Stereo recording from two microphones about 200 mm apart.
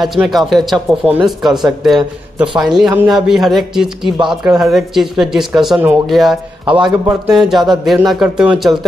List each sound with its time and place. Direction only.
0.0 s speech: centre (ahead or behind)
6.7 s a man's voice: 20° right (ahead or behind)
7.3 s speech: centre (ahead or behind)